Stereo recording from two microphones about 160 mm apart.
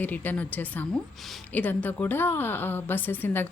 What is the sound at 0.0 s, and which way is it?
A woman's voice, 10° left (ahead or behind).